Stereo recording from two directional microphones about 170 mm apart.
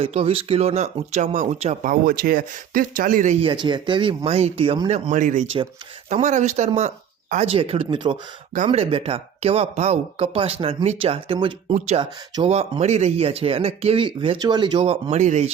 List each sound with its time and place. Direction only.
0.0 s speech: 35° right (ahead or behind); by 3.3 s 50° right (ahead or behind)
3.4 s speech: 30° right (ahead or behind)